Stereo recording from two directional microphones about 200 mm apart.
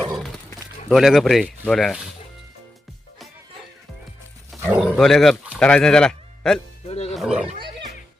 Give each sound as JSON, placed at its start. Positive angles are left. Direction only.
{"t": 0.1, "sound": "a sound", "side_deg": 0}
{"t": 0.9, "sound": "speech", "side_deg": 0}
{"t": 4.8, "sound": "speech", "side_deg": 0}
{"t": 6.8, "sound": "speech", "side_deg": 30}
{"t": 7.1, "sound": "speech", "side_deg": -5}